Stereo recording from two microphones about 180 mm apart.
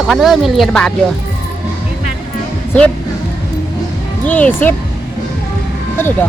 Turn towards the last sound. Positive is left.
turn(degrees=10)  # may be behind; listen again after turning